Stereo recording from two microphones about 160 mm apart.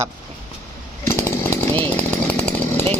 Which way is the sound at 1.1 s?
15° left (ahead or behind).